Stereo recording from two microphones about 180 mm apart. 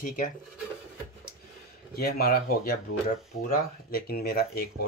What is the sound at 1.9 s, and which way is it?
Speech, 60° left (ahead or behind).